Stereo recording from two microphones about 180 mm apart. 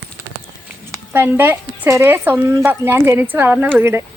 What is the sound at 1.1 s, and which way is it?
A woman's voice, 10° right (ahead or behind).